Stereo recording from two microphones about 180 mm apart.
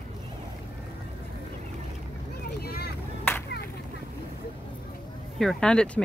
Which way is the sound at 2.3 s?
60° left (ahead or behind).